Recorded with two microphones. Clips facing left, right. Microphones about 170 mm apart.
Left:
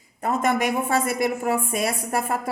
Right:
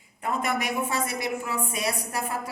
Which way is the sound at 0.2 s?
45° left (ahead or behind).